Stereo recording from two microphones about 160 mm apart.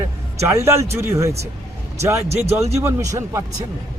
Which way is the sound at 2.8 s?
20° right (ahead or behind).